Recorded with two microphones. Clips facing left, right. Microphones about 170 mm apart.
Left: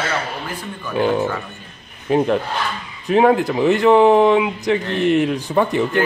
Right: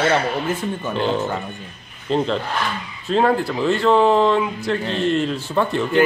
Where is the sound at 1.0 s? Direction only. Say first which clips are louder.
Left 5 dB; 15° left (ahead or behind).